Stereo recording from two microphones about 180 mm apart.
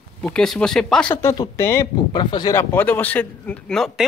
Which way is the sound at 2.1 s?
25° left (ahead or behind).